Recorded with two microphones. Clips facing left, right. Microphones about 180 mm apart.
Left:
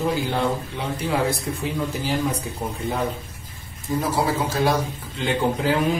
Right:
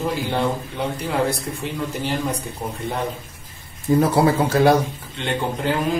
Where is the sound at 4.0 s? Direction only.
60° right (ahead or behind).